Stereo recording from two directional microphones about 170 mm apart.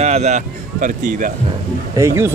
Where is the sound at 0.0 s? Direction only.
40° right (ahead or behind).